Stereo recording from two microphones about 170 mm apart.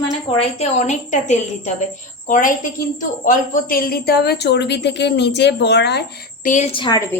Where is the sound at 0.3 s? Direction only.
35° left (ahead or behind).